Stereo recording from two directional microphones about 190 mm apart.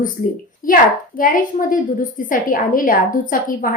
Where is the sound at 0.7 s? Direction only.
45° left (ahead or behind).